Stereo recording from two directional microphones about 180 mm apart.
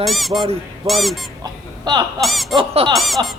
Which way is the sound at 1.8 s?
25° right (ahead or behind).